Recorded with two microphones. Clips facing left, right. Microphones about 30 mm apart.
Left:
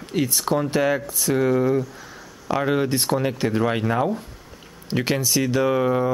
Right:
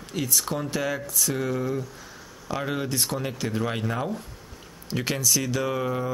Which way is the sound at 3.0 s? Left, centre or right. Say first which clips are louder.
Left 7 dB; centre.